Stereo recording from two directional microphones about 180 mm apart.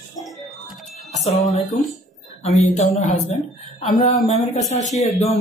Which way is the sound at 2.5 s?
35° left (ahead or behind).